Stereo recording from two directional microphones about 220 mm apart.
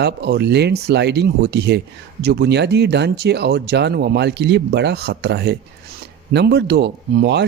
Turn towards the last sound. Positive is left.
turn(degrees=-50)  # may be behind; listen again after turning